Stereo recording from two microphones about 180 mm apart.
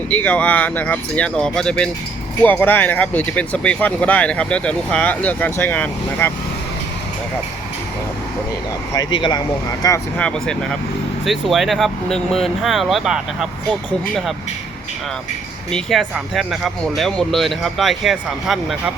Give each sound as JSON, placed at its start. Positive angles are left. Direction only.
{"t": 0.1, "sound": "speech", "side_deg": 10}
{"t": 8.9, "sound": "speech", "side_deg": 20}
{"t": 10.2, "sound": "speech", "side_deg": 5}
{"t": 15.7, "sound": "speech", "side_deg": 0}